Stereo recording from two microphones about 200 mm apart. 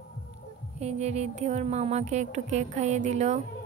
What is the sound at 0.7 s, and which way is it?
A woman's voice, 35° right (ahead or behind).